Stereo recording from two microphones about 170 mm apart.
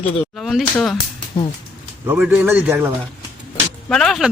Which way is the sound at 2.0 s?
10° right (ahead or behind).